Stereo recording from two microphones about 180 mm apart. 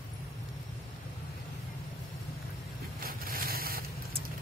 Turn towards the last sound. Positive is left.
turn(degrees=-55)  # may be behind; listen again after turning